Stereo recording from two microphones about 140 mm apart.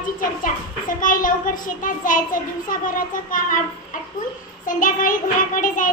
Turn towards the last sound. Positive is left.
turn(degrees=70)  # may be behind; listen again after turning